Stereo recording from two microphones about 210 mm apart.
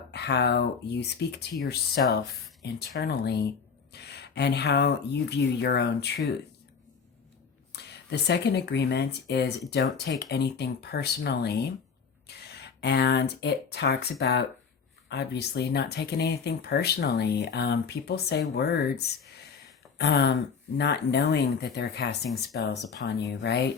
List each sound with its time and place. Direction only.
0.1 s speech: 50° left (ahead or behind)
7.7 s speech: 50° left (ahead or behind)